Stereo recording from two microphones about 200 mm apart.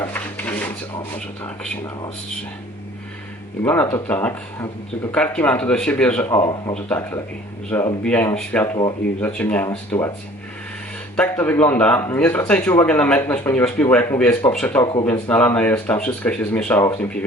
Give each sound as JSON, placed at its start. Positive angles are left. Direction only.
{"t": 0.0, "sound": "drawer open or close", "side_deg": 10}
{"t": 1.1, "sound": "speech", "side_deg": 5}
{"t": 3.6, "sound": "speech", "side_deg": 10}
{"t": 6.3, "sound": "speech", "side_deg": 20}
{"t": 6.7, "sound": "speech", "side_deg": 10}
{"t": 11.2, "sound": "speech", "side_deg": 10}